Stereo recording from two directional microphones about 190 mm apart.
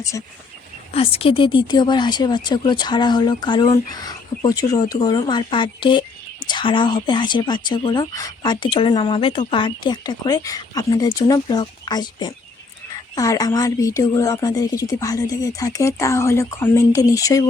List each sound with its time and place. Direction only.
0.9 s a woman's voice: 30° left (ahead or behind)